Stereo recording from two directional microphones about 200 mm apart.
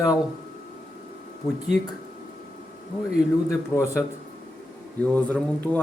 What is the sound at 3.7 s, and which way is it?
Speech, 15° left (ahead or behind).